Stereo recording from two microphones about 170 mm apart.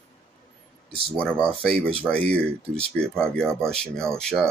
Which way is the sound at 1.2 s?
5° left (ahead or behind).